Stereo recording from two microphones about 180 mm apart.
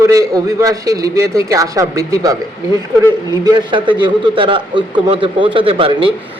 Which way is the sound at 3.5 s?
25° right (ahead or behind).